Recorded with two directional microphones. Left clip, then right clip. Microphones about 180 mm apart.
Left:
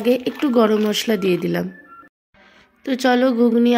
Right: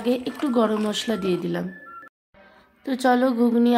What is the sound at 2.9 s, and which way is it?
Speech, 10° left (ahead or behind).